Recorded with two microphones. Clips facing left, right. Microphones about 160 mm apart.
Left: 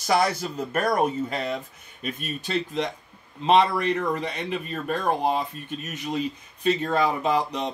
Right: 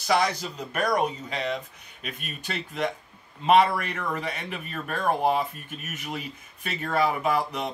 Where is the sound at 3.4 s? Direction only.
30° left (ahead or behind).